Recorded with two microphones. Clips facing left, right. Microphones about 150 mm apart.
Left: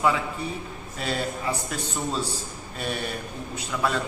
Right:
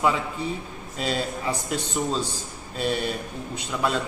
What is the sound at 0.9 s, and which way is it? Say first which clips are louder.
Speech: right 2 dB; 25° right (ahead or behind).